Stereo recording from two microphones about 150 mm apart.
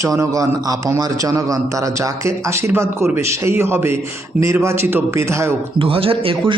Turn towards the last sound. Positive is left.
turn(degrees=-35)  # may be behind; listen again after turning